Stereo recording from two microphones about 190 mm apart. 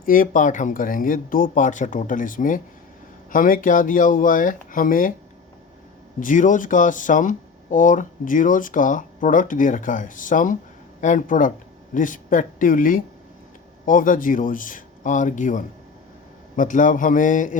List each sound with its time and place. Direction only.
0.0 s speech: 45° left (ahead or behind)
6.1 s speech: 45° left (ahead or behind)